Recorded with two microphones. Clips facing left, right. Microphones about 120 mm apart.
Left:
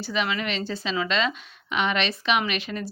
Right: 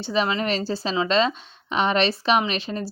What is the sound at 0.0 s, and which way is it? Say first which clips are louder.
Speech: right 4 dB; 30° right (ahead or behind).